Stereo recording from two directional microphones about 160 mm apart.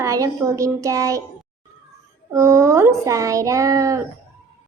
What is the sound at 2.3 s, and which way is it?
Child singing, 20° right (ahead or behind).